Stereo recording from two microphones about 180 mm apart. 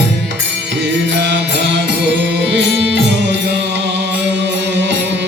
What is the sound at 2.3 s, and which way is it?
Music, 75° right (ahead or behind).